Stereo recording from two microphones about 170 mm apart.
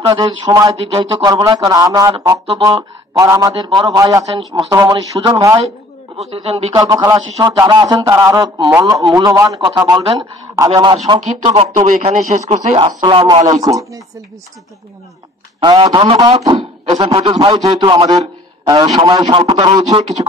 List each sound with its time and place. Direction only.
0.0 s speech: 20° right (ahead or behind)
0.7 s a man's voice: 35° right (ahead or behind)
1.1 s speech: 20° right (ahead or behind)
6.1 s a man's voice: 35° right (ahead or behind)
6.7 s speech: 20° right (ahead or behind)
11.7 s a man's voice: 40° right (ahead or behind)
13.5 s speech: 20° right (ahead or behind)
15.6 s speech: 25° right (ahead or behind)